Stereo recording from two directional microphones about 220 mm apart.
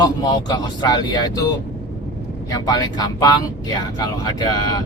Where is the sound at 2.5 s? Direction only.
15° left (ahead or behind).